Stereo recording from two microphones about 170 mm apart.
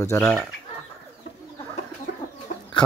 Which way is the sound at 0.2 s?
5° left (ahead or behind).